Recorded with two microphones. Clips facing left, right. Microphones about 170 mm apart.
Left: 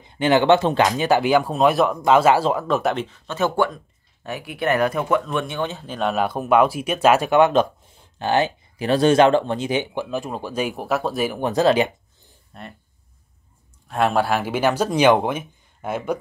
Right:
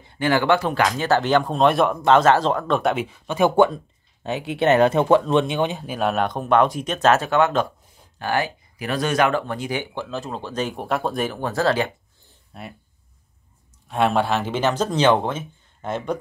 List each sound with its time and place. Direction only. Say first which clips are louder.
0.0 s speech: left 3 dB; 20° left (ahead or behind); by 11.3 s 5° left (ahead or behind)
11.3 s speech: left 6 dB; 20° left (ahead or behind)
12.5 s speech: right 1 dB; 5° right (ahead or behind)
13.8 s speech: even; centre (ahead or behind)